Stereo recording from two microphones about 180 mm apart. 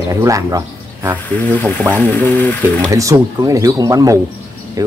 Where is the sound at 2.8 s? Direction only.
20° right (ahead or behind).